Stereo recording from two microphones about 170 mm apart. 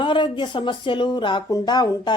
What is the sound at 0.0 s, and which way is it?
A woman's voice, 30° left (ahead or behind).